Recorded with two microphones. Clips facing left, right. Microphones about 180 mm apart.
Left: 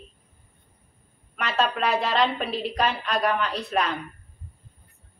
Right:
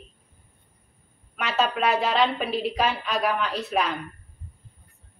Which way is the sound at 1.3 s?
Centre (ahead or behind).